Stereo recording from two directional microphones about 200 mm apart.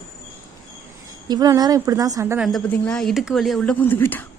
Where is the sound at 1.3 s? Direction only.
20° right (ahead or behind).